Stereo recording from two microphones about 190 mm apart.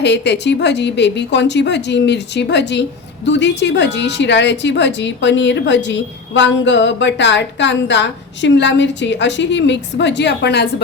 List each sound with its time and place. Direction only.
0.0 s a woman's voice: 65° left (ahead or behind)